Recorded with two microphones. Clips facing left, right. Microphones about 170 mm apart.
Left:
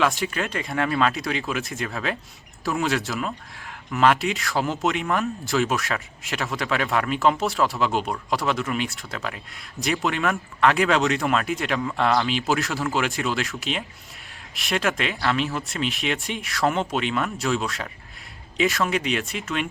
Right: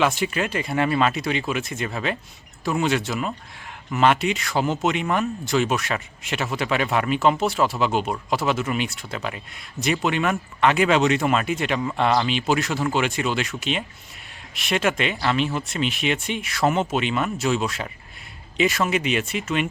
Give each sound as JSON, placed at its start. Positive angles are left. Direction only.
{"t": 0.0, "sound": "speech", "side_deg": 0}